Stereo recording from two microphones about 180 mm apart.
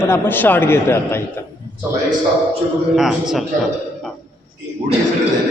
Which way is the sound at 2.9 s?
Centre (ahead or behind).